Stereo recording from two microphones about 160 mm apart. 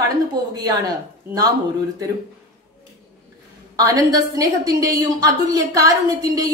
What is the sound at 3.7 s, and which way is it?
A woman's voice, 25° right (ahead or behind).